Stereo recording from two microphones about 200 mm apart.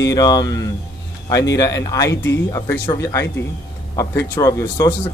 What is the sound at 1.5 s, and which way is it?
Speech, 15° left (ahead or behind).